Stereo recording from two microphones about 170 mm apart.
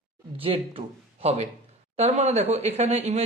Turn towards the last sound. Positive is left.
turn(degrees=-40)  # may be behind; listen again after turning